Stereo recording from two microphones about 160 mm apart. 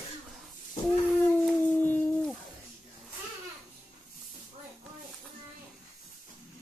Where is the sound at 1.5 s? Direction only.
10° left (ahead or behind).